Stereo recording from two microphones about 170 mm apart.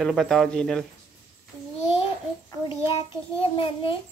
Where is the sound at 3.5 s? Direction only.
30° left (ahead or behind).